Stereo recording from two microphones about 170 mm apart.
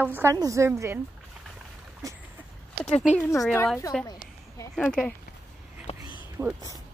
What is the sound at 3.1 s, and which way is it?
Speech, 15° left (ahead or behind).